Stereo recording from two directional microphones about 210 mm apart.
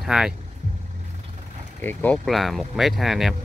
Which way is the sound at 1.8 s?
10° left (ahead or behind).